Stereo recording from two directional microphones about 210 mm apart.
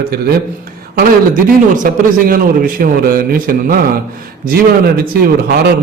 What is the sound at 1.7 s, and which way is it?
A man's voice, 40° right (ahead or behind).